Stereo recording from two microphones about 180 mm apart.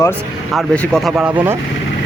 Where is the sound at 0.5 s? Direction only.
Centre (ahead or behind).